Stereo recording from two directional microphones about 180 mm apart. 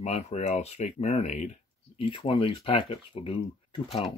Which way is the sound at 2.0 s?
30° left (ahead or behind).